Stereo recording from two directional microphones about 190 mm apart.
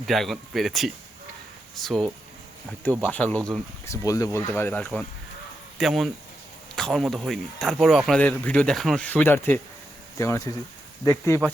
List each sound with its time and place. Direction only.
0.0 s speech: centre (ahead or behind)
3.8 s speech: 15° left (ahead or behind)